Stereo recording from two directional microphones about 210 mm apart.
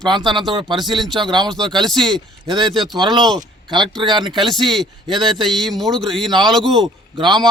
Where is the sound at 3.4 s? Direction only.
20° right (ahead or behind).